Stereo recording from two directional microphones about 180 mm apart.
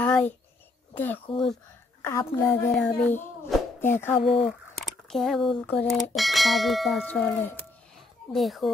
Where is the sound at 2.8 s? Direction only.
5° left (ahead or behind).